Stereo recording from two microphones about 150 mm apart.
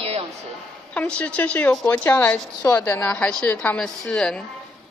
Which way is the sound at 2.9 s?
15° left (ahead or behind).